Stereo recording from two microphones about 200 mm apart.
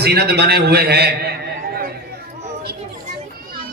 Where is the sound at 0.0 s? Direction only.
55° right (ahead or behind).